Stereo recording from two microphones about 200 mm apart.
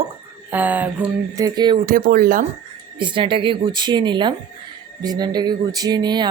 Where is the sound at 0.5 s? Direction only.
10° right (ahead or behind).